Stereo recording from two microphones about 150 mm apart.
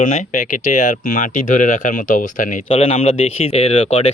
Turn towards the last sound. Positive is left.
turn(degrees=45)  # may be behind; listen again after turning